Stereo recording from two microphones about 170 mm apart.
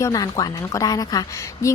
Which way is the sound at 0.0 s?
20° left (ahead or behind).